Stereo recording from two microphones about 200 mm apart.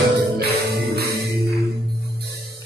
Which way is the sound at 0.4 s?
50° right (ahead or behind).